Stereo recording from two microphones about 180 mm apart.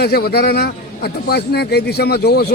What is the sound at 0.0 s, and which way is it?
A man's voice, 60° left (ahead or behind).